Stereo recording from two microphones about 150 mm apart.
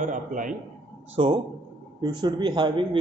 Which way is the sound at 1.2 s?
35° right (ahead or behind).